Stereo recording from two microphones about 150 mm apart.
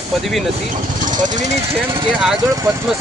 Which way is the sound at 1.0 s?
60° right (ahead or behind).